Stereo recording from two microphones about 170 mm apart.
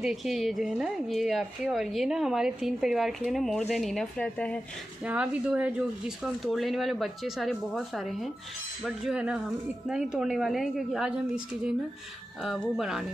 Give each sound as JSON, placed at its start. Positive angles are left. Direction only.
{"t": 0.0, "sound": "speech", "side_deg": 0}
{"t": 5.0, "sound": "speech", "side_deg": -10}